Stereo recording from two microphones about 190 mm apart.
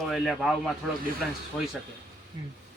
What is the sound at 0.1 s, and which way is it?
Speech, centre (ahead or behind).